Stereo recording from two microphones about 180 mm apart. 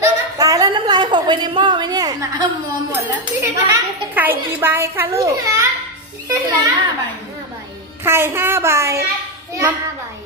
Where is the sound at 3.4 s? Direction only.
10° right (ahead or behind).